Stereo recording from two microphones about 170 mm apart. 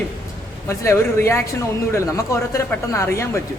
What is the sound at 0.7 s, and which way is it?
A man's voice, 15° left (ahead or behind).